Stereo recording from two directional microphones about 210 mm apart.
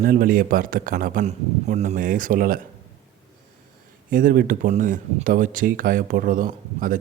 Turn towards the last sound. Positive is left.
turn(degrees=-40)  # may be behind; listen again after turning